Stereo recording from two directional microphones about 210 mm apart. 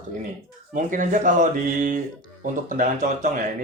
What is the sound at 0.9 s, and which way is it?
A man's voice, 40° right (ahead or behind).